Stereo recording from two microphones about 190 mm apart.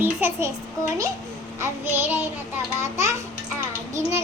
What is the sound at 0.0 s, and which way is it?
Speech, 10° right (ahead or behind).